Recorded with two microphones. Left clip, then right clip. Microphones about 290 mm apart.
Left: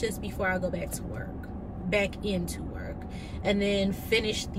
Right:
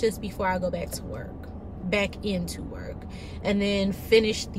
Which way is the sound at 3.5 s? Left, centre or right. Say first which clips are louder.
Right 1 dB; centre.